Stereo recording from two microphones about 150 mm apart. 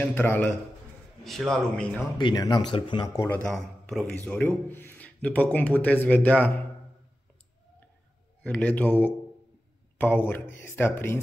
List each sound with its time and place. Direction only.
0.0 s speech: 15° left (ahead or behind)
1.2 s a man's voice: centre (ahead or behind)
2.1 s speech: 30° left (ahead or behind)
3.4 s a man's voice: 5° left (ahead or behind)
8.5 s speech: 10° left (ahead or behind)